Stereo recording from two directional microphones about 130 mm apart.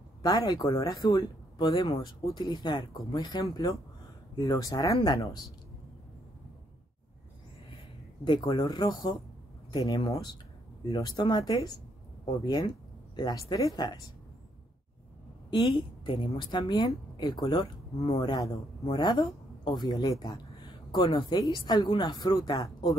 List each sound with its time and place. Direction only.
0.2 s a woman's voice: 30° left (ahead or behind)
8.2 s a woman's voice: 35° left (ahead or behind)
15.5 s a woman's voice: 40° left (ahead or behind)